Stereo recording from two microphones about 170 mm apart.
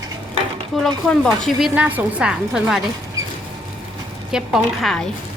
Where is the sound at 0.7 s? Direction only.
Centre (ahead or behind).